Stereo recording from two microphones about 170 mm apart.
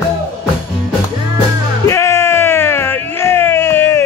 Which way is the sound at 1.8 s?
15° left (ahead or behind).